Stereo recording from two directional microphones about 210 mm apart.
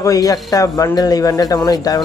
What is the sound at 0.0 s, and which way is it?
Speech, 15° left (ahead or behind).